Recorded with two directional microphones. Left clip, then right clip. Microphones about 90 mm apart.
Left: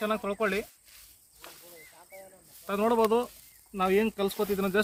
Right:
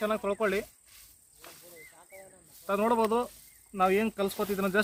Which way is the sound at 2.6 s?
50° right (ahead or behind).